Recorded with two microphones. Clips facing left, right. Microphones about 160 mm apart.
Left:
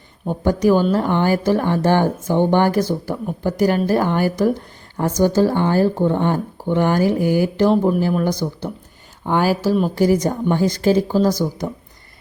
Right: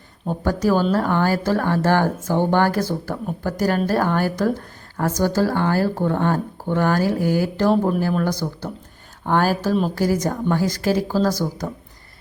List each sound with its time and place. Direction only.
0.4 s speech: 15° left (ahead or behind)
9.9 s speech: 20° left (ahead or behind)